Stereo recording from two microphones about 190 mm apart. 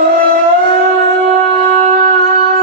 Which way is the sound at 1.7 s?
50° right (ahead or behind).